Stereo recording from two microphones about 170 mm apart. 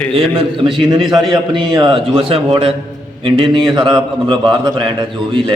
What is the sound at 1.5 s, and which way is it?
A man's voice, 30° right (ahead or behind).